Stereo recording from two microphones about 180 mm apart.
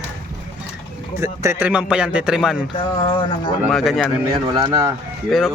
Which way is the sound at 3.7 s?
Centre (ahead or behind).